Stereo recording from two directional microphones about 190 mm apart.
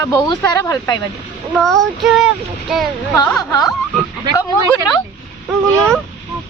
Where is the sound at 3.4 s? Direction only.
20° left (ahead or behind).